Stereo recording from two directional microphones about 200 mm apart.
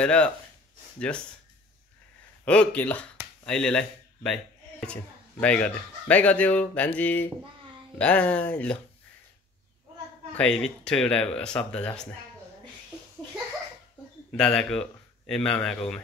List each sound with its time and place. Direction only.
0.0 s speech: 5° left (ahead or behind)
2.4 s speech: 5° left (ahead or behind)
10.3 s speech: 5° left (ahead or behind)
14.3 s a man's voice: 5° left (ahead or behind)